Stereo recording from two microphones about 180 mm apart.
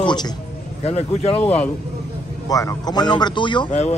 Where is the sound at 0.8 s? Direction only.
35° left (ahead or behind).